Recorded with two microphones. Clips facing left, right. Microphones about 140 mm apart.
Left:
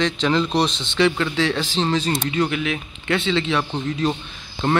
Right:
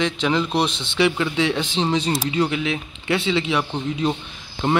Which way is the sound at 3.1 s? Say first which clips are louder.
Even; 10° right (ahead or behind).